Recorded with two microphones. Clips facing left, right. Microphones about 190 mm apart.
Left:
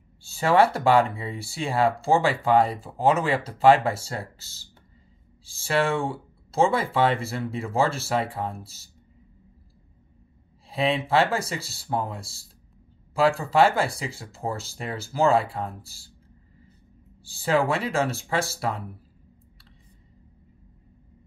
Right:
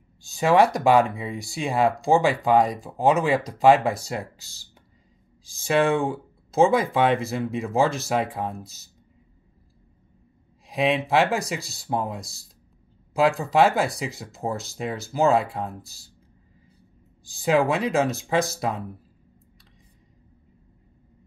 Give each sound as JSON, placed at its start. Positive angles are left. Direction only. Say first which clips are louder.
{"t": 0.2, "sound": "speech", "louder": "right 1 dB", "side_deg": -15}
{"t": 10.7, "sound": "speech", "louder": "right 2 dB", "side_deg": -15}
{"t": 17.2, "sound": "speech", "louder": "right 2 dB", "side_deg": -15}